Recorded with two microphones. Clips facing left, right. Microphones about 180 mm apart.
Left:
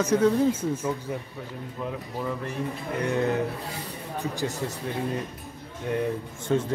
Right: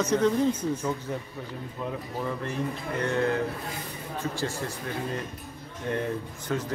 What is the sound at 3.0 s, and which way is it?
Speech, 15° left (ahead or behind).